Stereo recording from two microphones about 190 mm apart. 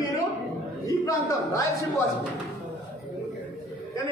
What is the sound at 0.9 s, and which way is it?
Speech, 15° left (ahead or behind).